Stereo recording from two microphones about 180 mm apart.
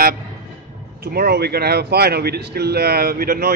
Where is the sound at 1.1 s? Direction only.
60° right (ahead or behind).